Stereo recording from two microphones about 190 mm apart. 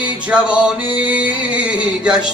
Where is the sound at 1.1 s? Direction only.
5° right (ahead or behind).